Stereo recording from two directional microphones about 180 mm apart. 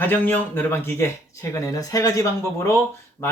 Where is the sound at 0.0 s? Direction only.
10° left (ahead or behind).